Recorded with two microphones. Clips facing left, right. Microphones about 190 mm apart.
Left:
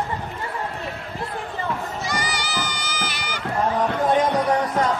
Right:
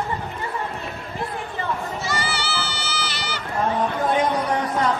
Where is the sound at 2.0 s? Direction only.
15° left (ahead or behind).